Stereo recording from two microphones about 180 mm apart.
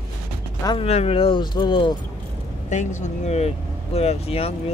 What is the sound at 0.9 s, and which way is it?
Speech, 35° left (ahead or behind).